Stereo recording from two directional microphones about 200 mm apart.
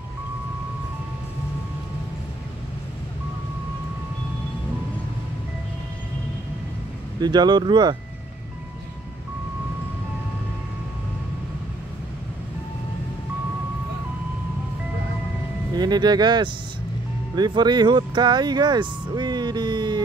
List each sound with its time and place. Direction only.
7.2 s speech: 20° right (ahead or behind)
15.7 s speech: 20° right (ahead or behind)